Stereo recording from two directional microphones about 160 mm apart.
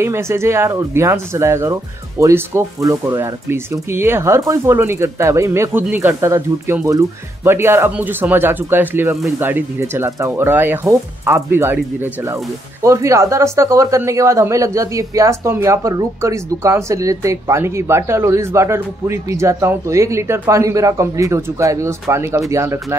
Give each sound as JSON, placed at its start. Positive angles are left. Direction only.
{"t": 0.0, "sound": "speech", "side_deg": -15}